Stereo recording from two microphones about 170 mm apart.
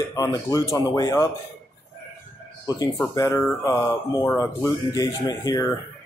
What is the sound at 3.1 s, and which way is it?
Speech, 15° left (ahead or behind).